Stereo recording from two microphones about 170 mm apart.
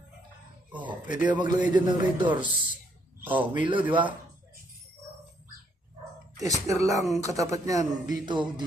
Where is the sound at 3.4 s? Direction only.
30° right (ahead or behind).